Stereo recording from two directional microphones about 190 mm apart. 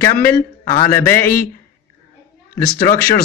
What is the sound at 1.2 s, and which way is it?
Speech, 50° left (ahead or behind).